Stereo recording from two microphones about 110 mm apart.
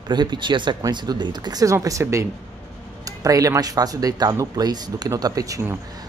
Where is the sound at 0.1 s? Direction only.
45° right (ahead or behind).